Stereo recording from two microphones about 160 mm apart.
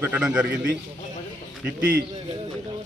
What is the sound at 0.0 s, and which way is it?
Speech, 5° right (ahead or behind).